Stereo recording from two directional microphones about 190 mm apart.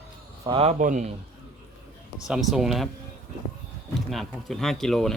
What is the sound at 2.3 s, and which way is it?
Speech, centre (ahead or behind).